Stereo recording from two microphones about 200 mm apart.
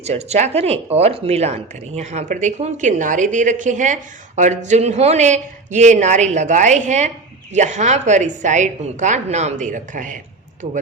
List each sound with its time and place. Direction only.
0.0 s a woman's voice: 35° right (ahead or behind)